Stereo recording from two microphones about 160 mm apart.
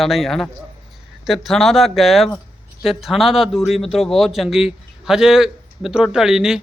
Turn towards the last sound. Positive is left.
turn(degrees=-5)  # may be behind; listen again after turning